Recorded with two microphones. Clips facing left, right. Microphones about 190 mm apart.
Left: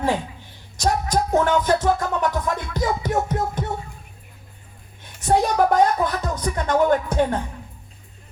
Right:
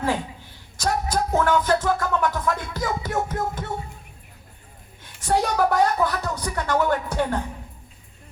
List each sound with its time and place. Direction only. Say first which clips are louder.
0.8 s music: left 2 dB; 20° left (ahead or behind)
5.2 s a sound: left 3 dB; 20° left (ahead or behind)
5.7 s music: left 2 dB; 20° left (ahead or behind)